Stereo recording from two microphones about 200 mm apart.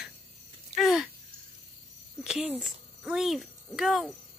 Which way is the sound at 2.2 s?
5° right (ahead or behind).